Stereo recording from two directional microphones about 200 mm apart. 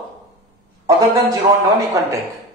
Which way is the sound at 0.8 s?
15° right (ahead or behind).